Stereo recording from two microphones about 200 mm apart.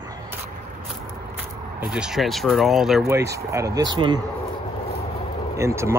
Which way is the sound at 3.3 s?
15° right (ahead or behind).